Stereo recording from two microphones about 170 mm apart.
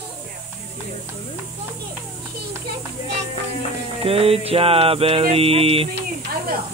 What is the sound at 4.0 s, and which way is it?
Mantra, 35° right (ahead or behind).